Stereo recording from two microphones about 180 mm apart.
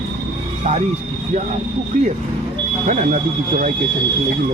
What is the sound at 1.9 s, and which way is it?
Speech, 45° right (ahead or behind).